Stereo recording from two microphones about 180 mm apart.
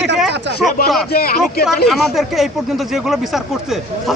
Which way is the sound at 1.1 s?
60° left (ahead or behind).